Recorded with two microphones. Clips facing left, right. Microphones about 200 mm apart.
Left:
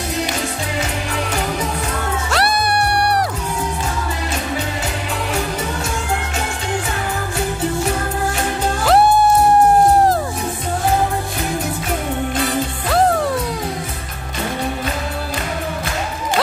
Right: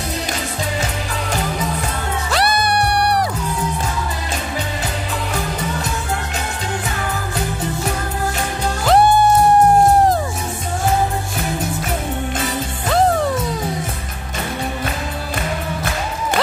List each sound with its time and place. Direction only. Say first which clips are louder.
2.3 s music: right 1 dB; centre (ahead or behind)